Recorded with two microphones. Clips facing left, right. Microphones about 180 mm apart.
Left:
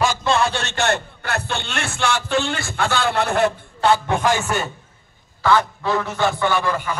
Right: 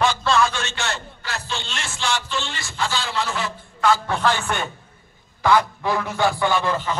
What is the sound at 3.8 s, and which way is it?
Speech, 30° left (ahead or behind).